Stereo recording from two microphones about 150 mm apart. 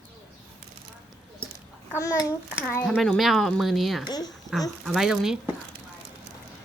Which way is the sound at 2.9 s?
5° left (ahead or behind).